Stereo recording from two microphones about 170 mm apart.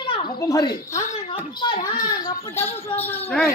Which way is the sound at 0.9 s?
40° left (ahead or behind).